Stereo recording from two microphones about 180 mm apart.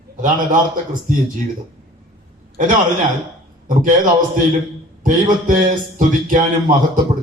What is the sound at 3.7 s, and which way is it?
Speech, 50° right (ahead or behind).